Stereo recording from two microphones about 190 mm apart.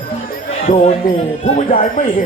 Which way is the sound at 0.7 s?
35° left (ahead or behind).